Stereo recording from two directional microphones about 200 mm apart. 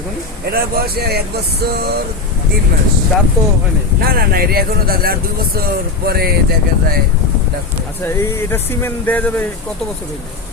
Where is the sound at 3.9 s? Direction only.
50° right (ahead or behind).